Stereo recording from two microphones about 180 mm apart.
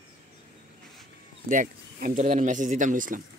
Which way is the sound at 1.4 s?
50° right (ahead or behind).